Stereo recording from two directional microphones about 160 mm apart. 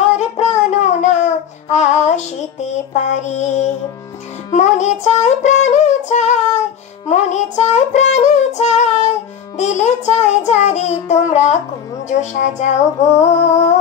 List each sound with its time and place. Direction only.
0.0 s child singing: 45° left (ahead or behind)
4.5 s music: 45° left (ahead or behind)
7.1 s child singing: 45° left (ahead or behind)